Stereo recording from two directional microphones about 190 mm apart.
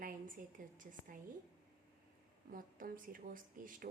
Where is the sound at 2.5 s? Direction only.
45° right (ahead or behind).